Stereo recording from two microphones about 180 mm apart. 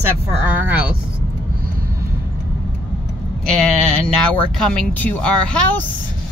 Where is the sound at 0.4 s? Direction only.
10° right (ahead or behind).